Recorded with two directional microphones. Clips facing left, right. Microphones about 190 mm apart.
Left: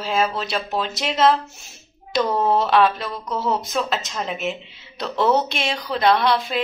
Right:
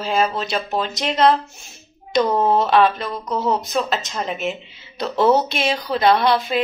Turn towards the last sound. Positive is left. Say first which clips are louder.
# right 2 dB
turn(degrees=0)  # may be behind; listen again after turning